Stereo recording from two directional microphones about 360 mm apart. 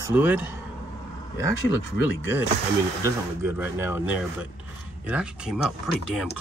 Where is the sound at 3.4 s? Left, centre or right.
Centre.